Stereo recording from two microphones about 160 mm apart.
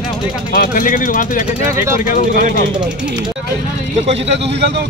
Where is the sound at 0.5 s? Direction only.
65° left (ahead or behind).